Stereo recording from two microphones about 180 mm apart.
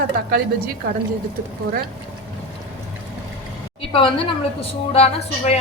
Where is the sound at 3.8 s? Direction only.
30° left (ahead or behind).